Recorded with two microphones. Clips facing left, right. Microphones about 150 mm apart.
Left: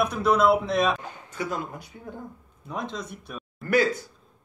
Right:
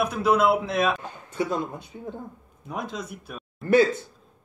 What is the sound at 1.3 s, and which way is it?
Speech, 25° right (ahead or behind).